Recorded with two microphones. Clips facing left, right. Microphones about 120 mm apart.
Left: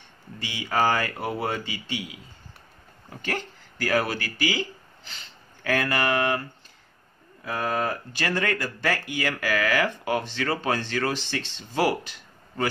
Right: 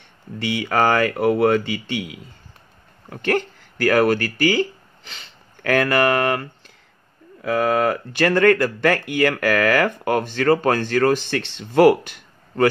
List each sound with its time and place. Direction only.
0.4 s speech: 60° right (ahead or behind)
5.1 s speech: 65° right (ahead or behind)
7.4 s speech: 80° right; by 12.6 s 55° right (ahead or behind)